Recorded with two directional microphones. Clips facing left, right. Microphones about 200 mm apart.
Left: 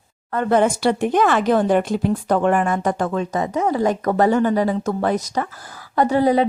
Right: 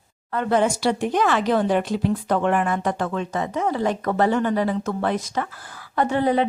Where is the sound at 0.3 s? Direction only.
50° left (ahead or behind).